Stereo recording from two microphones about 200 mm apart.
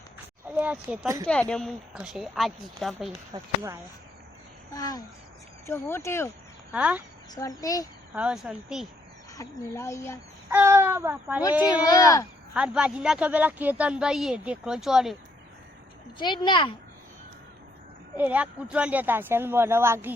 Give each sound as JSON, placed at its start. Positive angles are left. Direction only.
{"t": 0.4, "sound": "speech", "side_deg": -10}
{"t": 1.3, "sound": "speech", "side_deg": 5}
{"t": 3.3, "sound": "speech", "side_deg": -15}
{"t": 4.7, "sound": "speech", "side_deg": 20}
{"t": 6.7, "sound": "speech", "side_deg": -5}
{"t": 7.3, "sound": "speech", "side_deg": 15}
{"t": 8.1, "sound": "speech", "side_deg": -5}
{"t": 9.3, "sound": "speech", "side_deg": 15}
{"t": 10.5, "sound": "speech", "side_deg": -10}
{"t": 11.6, "sound": "speech", "side_deg": 20}
{"t": 12.5, "sound": "speech", "side_deg": -5}
{"t": 16.1, "sound": "speech", "side_deg": 20}
{"t": 18.2, "sound": "speech", "side_deg": -10}